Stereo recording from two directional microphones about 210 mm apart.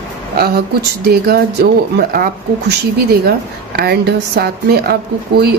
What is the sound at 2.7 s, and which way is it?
Speech, 45° right (ahead or behind).